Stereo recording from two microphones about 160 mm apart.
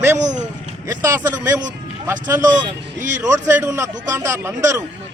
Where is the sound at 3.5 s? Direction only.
15° right (ahead or behind).